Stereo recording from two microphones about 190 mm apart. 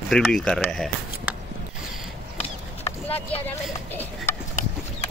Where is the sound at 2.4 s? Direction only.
30° left (ahead or behind).